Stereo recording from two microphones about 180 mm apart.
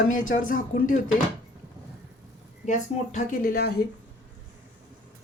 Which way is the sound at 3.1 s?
50° left (ahead or behind).